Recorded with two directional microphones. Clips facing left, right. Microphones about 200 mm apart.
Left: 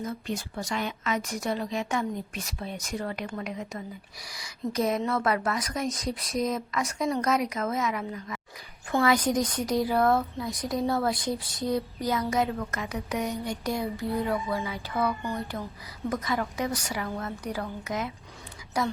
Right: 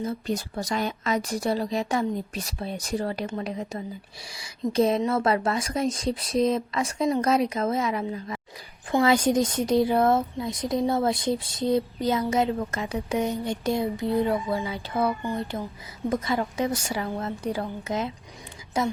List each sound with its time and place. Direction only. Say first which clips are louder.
0.0 s speech: right 4 dB; 35° right (ahead or behind)